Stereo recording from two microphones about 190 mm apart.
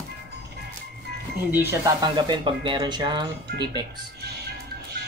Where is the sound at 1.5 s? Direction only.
10° right (ahead or behind).